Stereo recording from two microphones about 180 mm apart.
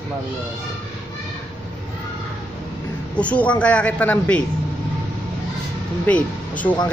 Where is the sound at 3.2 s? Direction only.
5° left (ahead or behind).